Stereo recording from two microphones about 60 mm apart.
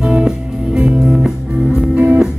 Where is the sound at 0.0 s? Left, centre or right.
Centre.